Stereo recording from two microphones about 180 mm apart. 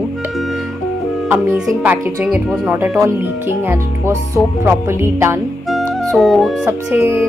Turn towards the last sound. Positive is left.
turn(degrees=-15)  # may be behind; listen again after turning